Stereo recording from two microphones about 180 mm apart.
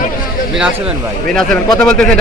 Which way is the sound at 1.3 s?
5° left (ahead or behind).